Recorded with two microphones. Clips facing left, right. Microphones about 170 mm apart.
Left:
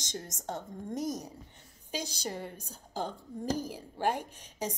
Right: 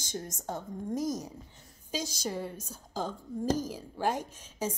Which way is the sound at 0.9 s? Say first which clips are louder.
Right 2 dB; 65° left (ahead or behind).